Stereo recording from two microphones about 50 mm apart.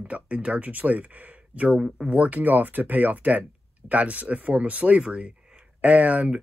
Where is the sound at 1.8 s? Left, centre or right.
Centre.